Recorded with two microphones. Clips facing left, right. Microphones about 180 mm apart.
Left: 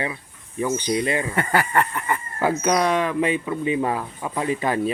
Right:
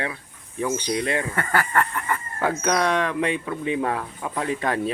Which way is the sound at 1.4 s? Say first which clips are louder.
Left 3 dB; 15° left (ahead or behind).